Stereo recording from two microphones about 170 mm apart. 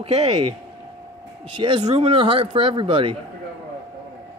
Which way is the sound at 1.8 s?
35° right (ahead or behind).